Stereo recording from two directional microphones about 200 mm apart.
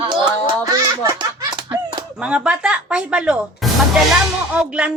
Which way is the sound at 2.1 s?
5° right (ahead or behind).